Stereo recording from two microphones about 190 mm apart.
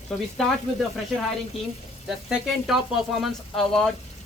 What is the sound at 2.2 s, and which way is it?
Speech, centre (ahead or behind).